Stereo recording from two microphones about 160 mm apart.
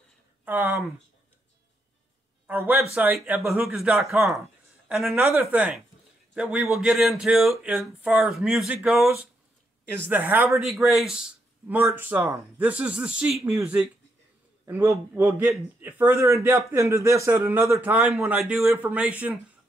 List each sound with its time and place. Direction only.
0.5 s speech: 10° right (ahead or behind)
2.4 s speech: 10° right (ahead or behind)
5.2 s speech: 15° right (ahead or behind)
10.6 s speech: centre (ahead or behind)
18.1 s speech: 5° right (ahead or behind)